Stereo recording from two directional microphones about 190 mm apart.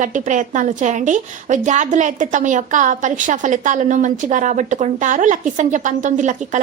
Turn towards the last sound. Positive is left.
turn(degrees=-40)  # may be behind; listen again after turning